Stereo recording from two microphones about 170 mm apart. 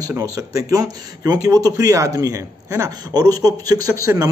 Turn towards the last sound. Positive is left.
turn(degrees=-20)  # may be behind; listen again after turning